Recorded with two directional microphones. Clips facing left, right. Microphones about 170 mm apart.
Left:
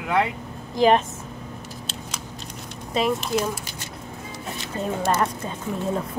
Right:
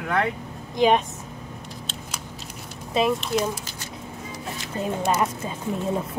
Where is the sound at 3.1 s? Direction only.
5° left (ahead or behind).